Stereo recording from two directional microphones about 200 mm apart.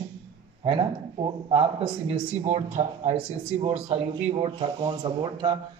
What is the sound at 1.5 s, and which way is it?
Speech, 30° right (ahead or behind).